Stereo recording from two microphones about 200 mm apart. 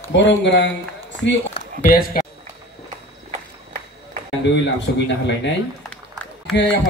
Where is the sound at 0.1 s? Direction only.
65° left (ahead or behind).